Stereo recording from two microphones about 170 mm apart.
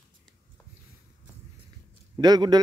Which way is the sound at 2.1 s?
25° right (ahead or behind).